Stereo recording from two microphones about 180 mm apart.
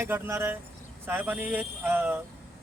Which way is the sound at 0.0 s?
15° right (ahead or behind).